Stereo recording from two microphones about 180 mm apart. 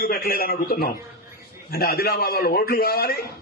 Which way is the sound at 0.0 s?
60° left (ahead or behind).